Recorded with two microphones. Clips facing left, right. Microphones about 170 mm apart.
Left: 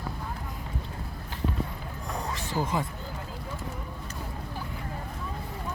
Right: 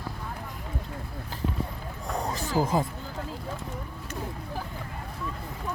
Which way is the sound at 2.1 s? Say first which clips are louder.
Right 4 dB; 35° right (ahead or behind).